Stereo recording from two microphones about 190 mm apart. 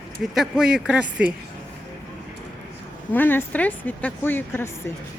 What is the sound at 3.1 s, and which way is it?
Speech, 10° left (ahead or behind).